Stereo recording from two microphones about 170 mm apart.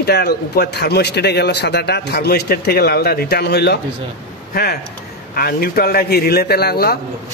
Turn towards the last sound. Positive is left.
turn(degrees=65)  # may be behind; listen again after turning